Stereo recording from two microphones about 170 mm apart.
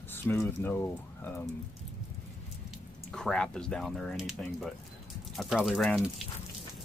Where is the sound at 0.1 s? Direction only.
15° left (ahead or behind).